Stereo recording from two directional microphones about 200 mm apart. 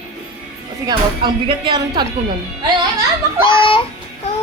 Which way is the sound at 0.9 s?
20° right (ahead or behind).